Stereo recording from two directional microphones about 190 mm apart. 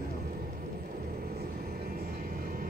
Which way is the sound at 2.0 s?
50° right (ahead or behind).